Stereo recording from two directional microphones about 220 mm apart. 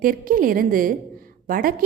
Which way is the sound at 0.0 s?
40° right (ahead or behind).